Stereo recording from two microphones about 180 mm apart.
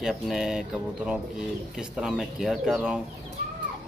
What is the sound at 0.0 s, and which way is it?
Speech, centre (ahead or behind).